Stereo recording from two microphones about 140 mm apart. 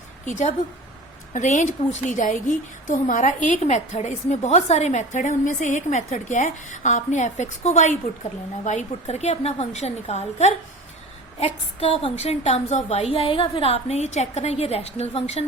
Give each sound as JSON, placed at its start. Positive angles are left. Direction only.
{"t": 0.3, "sound": "a woman's voice", "side_deg": 60}
{"t": 12.0, "sound": "a woman's voice", "side_deg": 50}